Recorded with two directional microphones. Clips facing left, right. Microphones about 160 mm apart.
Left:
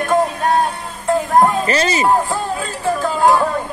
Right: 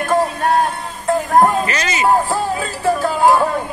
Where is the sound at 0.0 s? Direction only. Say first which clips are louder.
Even; centre (ahead or behind).